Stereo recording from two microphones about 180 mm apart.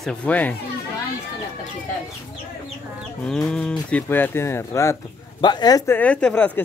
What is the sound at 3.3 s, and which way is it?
Livestock, 5° left (ahead or behind).